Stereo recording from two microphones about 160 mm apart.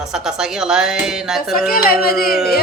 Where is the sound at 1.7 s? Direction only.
65° left (ahead or behind).